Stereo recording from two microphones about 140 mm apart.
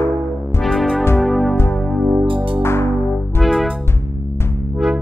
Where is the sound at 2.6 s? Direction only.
20° left (ahead or behind).